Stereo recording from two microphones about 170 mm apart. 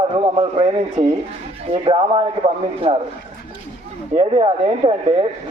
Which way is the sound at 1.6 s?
30° right (ahead or behind).